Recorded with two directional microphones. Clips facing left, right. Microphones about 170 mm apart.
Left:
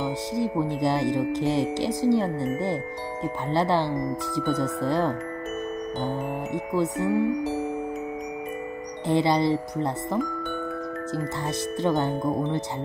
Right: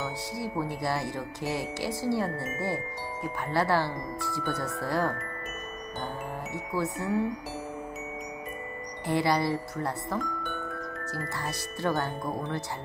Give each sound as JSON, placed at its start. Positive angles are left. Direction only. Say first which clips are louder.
{"t": 0.3, "sound": "speech", "louder": "left 7 dB", "side_deg": 20}
{"t": 3.5, "sound": "speech", "louder": "left 3 dB", "side_deg": 20}
{"t": 6.5, "sound": "speech", "louder": "left 6 dB", "side_deg": 20}
{"t": 9.0, "sound": "speech", "louder": "left 5 dB", "side_deg": 20}
{"t": 11.4, "sound": "speech", "louder": "left 5 dB", "side_deg": 20}